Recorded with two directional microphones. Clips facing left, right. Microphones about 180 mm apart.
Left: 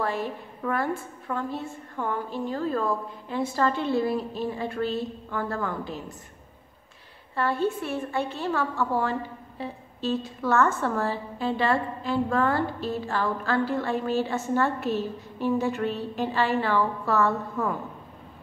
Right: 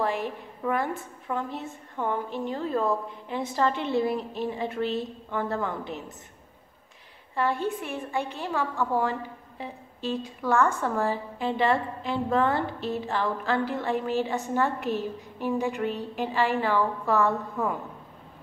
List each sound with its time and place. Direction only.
0.0 s a woman's voice: 15° right (ahead or behind)
7.3 s a woman's voice: 15° right (ahead or behind)